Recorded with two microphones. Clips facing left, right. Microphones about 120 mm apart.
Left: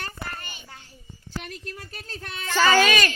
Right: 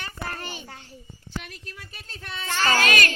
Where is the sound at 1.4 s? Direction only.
45° left (ahead or behind).